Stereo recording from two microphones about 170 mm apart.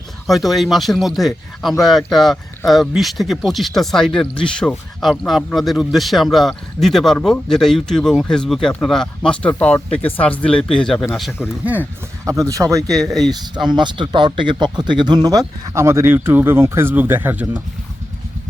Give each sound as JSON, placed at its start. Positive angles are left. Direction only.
{"t": 0.3, "sound": "speech", "side_deg": 0}
{"t": 12.2, "sound": "speech", "side_deg": -20}
{"t": 13.1, "sound": "speech", "side_deg": 0}
{"t": 13.7, "sound": "speech", "side_deg": -25}